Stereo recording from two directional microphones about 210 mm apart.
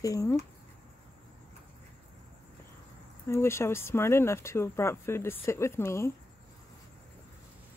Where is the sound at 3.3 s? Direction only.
10° left (ahead or behind).